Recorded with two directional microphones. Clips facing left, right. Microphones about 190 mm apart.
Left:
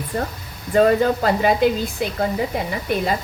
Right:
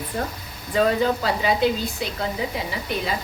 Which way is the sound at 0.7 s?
50° left (ahead or behind).